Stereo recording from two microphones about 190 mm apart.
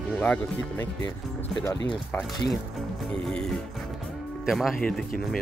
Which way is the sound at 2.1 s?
10° left (ahead or behind).